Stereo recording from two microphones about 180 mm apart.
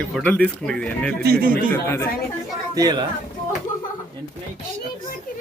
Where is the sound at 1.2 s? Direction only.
55° right (ahead or behind).